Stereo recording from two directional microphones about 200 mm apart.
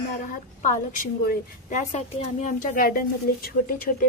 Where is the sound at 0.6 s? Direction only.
40° left (ahead or behind).